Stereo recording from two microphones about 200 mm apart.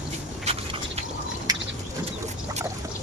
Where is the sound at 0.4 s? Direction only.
30° right (ahead or behind).